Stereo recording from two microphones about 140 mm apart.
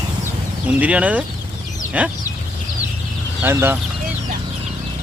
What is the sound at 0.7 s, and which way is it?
Speech, 10° right (ahead or behind).